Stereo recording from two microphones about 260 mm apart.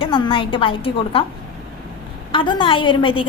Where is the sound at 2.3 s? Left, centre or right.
Centre.